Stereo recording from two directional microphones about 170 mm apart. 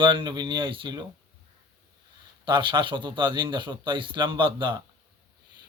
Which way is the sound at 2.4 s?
30° right (ahead or behind).